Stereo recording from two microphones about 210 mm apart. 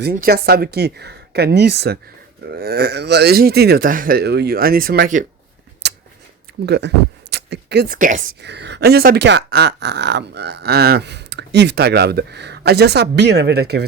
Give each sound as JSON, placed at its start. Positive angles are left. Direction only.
{"t": 0.0, "sound": "speech", "side_deg": -45}
{"t": 5.8, "sound": "scissors", "side_deg": -50}
{"t": 6.7, "sound": "speech", "side_deg": -55}